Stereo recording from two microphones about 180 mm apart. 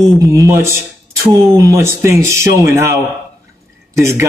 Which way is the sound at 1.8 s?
15° right (ahead or behind).